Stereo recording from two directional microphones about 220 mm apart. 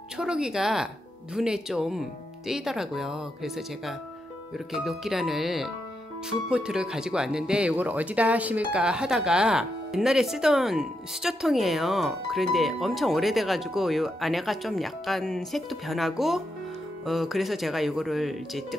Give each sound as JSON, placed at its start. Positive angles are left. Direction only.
{"t": 0.2, "sound": "speech", "side_deg": -5}